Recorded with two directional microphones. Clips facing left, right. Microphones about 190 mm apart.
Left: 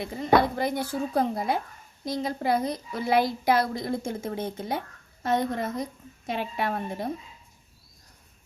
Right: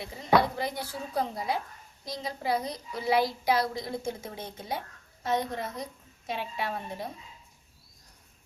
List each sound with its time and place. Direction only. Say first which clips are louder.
0.0 s a woman's voice: left 3 dB; 55° left (ahead or behind)